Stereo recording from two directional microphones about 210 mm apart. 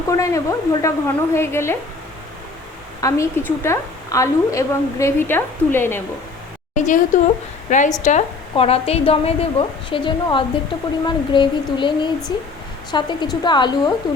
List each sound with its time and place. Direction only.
0.1 s a woman's voice: 15° left (ahead or behind)
3.0 s a woman's voice: 15° left (ahead or behind)
6.7 s a woman's voice: 35° left (ahead or behind); by 13.9 s 20° left (ahead or behind)